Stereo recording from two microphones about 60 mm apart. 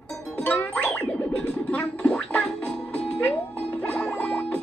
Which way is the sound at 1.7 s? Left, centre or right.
Left.